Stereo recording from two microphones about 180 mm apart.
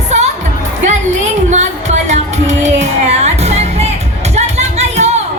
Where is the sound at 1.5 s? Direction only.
40° right (ahead or behind).